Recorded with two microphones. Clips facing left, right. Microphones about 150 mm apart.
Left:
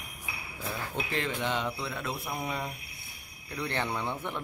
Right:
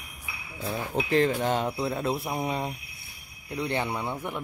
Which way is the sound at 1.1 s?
40° right (ahead or behind).